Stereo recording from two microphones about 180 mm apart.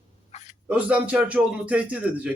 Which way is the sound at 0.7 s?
5° right (ahead or behind).